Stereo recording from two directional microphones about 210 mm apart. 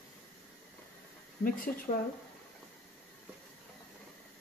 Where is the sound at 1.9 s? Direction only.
30° left (ahead or behind).